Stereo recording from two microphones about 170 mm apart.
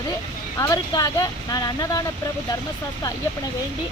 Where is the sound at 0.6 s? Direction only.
20° left (ahead or behind).